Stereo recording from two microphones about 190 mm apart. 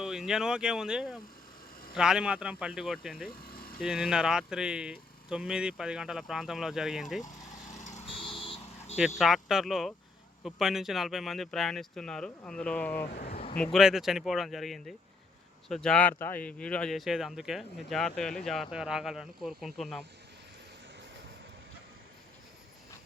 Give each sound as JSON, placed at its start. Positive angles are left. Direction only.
{"t": 0.0, "sound": "speech", "side_deg": -5}
{"t": 7.2, "sound": "vehicle", "side_deg": 40}
{"t": 9.0, "sound": "speech", "side_deg": 0}
{"t": 13.1, "sound": "speech", "side_deg": 55}
{"t": 13.7, "sound": "speech", "side_deg": 0}